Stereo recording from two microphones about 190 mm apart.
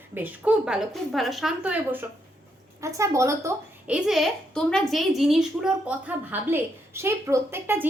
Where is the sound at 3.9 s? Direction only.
Centre (ahead or behind).